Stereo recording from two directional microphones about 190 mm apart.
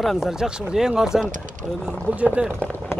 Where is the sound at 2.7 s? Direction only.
10° left (ahead or behind).